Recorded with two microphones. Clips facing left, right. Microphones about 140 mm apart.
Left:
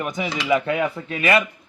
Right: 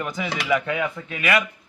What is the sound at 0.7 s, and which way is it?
Speech, 35° left (ahead or behind).